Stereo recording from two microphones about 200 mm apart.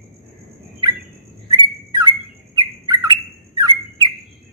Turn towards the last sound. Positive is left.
turn(degrees=-20)  # may be behind; listen again after turning